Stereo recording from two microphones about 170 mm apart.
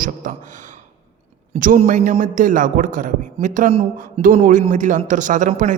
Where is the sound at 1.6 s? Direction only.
50° right (ahead or behind).